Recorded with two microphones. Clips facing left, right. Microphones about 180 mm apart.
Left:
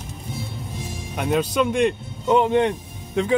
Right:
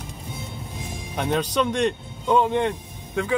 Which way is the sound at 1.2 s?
5° left (ahead or behind).